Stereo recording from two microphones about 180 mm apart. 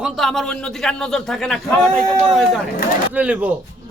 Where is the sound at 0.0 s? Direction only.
Centre (ahead or behind).